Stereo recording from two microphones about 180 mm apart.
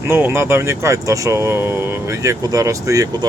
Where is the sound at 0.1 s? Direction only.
15° right (ahead or behind).